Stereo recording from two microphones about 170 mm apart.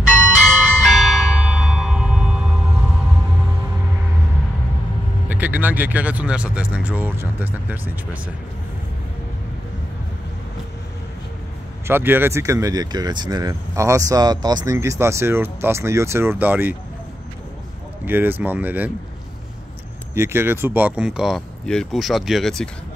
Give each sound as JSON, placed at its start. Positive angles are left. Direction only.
{"t": 0.0, "sound": "bell", "side_deg": -5}
{"t": 5.3, "sound": "speech", "side_deg": -10}
{"t": 11.9, "sound": "speech", "side_deg": -10}
{"t": 18.0, "sound": "speech", "side_deg": -10}
{"t": 20.2, "sound": "speech", "side_deg": -15}